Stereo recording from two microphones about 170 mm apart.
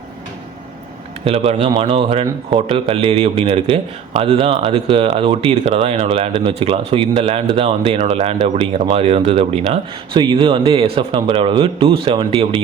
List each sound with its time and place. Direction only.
1.2 s a man's voice: 35° right (ahead or behind)